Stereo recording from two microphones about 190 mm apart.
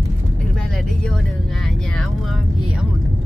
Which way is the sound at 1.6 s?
Centre (ahead or behind).